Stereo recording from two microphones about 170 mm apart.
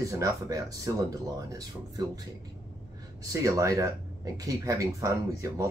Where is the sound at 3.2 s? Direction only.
20° right (ahead or behind).